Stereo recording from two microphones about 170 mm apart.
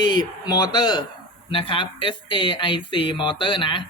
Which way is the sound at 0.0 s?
25° left (ahead or behind).